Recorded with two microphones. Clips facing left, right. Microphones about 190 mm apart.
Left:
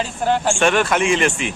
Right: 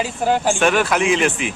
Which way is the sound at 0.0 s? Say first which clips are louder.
Right 1 dB; 10° right (ahead or behind).